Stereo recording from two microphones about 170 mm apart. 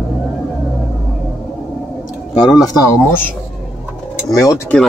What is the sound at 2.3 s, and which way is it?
Speech, 25° left (ahead or behind).